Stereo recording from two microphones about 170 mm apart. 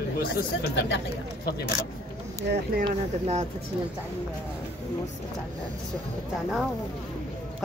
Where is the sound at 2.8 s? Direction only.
40° right (ahead or behind).